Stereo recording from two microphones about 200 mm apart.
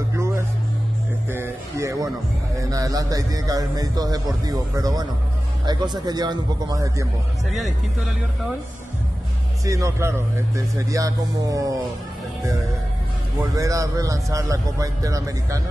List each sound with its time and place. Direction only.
1.3 s a man's voice: 15° right (ahead or behind)
9.7 s a man's voice: 15° right (ahead or behind)
13.6 s a man's voice: 15° right (ahead or behind)